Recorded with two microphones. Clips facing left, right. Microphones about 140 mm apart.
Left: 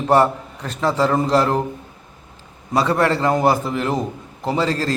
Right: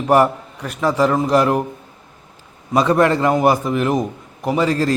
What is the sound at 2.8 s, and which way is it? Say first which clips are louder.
Speech: right 3 dB; 20° right (ahead or behind).